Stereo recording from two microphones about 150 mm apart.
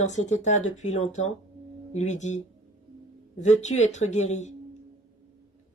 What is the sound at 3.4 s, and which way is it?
Speech, 50° left (ahead or behind).